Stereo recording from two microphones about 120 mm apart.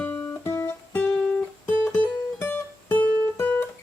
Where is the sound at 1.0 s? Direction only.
5° left (ahead or behind).